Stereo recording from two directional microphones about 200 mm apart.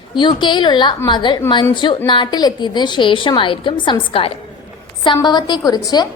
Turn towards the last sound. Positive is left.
turn(degrees=20)  # may be behind; listen again after turning